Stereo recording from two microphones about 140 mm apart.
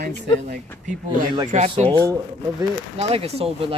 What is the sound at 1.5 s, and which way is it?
Speech, 55° right (ahead or behind).